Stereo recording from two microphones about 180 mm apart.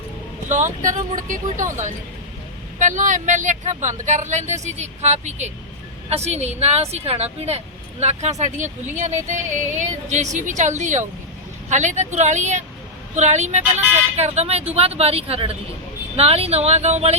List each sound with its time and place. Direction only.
0.4 s a woman's voice: 40° right (ahead or behind)